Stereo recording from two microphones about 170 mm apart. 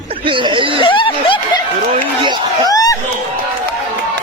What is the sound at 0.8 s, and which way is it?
Snicker, 30° left (ahead or behind).